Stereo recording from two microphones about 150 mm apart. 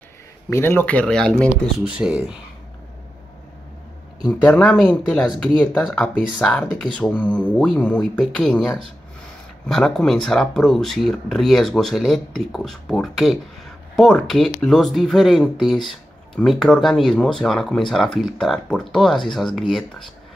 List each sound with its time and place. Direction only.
0.5 s speech: 15° left (ahead or behind)
2.0 s speech: 5° right (ahead or behind)
4.3 s speech: 10° left (ahead or behind)